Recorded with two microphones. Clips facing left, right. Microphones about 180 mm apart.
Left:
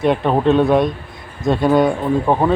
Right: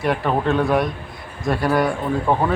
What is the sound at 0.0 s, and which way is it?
Speech, 20° left (ahead or behind).